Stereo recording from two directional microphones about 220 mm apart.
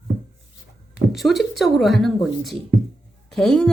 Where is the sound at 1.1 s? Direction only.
Centre (ahead or behind).